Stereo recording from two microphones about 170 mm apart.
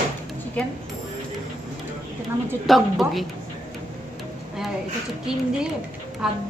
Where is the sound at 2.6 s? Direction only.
Centre (ahead or behind).